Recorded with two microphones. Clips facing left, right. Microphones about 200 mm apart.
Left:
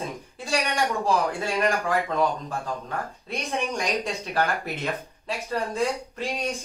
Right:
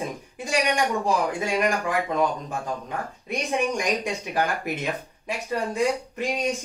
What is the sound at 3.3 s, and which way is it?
Speech, 15° right (ahead or behind).